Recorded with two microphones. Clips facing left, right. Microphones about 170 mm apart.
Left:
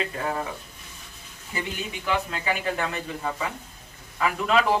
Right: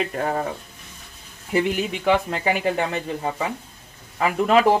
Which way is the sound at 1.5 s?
65° right (ahead or behind).